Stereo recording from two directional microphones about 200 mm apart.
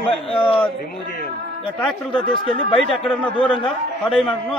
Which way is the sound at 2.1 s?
25° left (ahead or behind).